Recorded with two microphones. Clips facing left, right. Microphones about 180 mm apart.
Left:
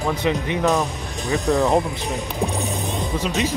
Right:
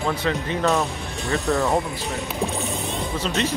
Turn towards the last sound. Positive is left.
turn(degrees=10)  # may be behind; listen again after turning